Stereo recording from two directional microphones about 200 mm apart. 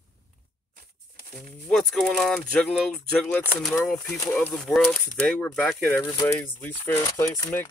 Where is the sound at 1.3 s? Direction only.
Centre (ahead or behind).